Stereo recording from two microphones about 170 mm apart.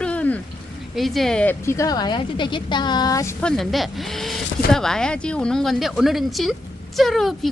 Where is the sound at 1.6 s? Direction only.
20° left (ahead or behind).